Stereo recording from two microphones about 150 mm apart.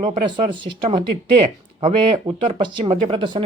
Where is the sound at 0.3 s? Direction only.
30° right (ahead or behind).